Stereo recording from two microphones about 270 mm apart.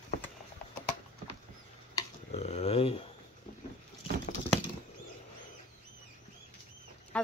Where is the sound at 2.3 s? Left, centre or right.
Left.